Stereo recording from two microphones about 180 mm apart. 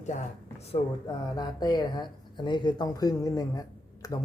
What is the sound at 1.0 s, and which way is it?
Speech, 25° left (ahead or behind).